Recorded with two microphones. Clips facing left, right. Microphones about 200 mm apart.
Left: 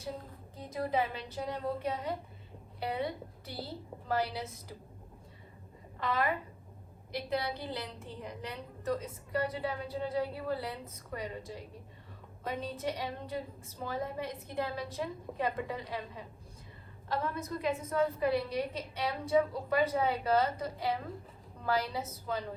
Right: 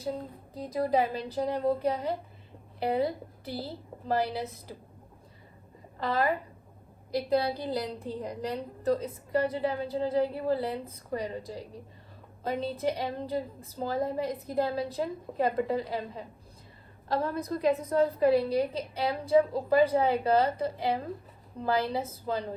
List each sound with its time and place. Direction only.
0.5 s a woman's voice: 35° right (ahead or behind)
6.0 s a woman's voice: 35° right (ahead or behind)